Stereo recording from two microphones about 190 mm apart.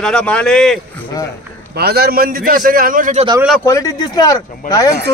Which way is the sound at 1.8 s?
55° right (ahead or behind).